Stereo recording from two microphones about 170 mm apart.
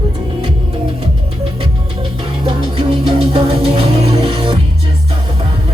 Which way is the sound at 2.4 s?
30° right (ahead or behind).